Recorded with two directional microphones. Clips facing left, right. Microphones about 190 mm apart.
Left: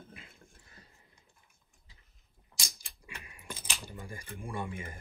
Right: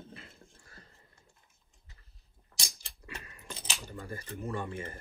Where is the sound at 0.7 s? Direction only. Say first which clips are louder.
Right 2 dB; 15° left (ahead or behind).